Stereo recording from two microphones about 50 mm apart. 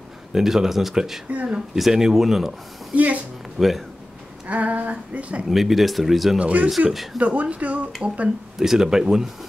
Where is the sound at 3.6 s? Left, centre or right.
Centre.